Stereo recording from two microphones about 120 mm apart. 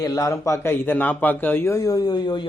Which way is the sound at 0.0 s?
30° left (ahead or behind).